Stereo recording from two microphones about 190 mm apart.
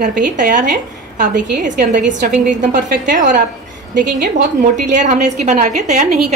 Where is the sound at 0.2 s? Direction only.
45° right (ahead or behind).